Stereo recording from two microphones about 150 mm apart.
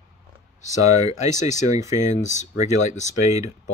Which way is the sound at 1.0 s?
50° left (ahead or behind).